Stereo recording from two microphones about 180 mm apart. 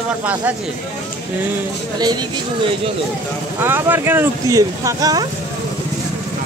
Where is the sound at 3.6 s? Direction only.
10° right (ahead or behind).